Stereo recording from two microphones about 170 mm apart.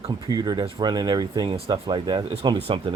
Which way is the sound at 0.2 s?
25° right (ahead or behind).